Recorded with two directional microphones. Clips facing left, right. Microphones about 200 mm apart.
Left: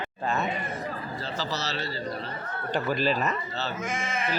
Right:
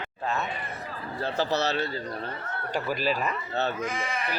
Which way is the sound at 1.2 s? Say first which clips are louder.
Right 8 dB; 60° right (ahead or behind).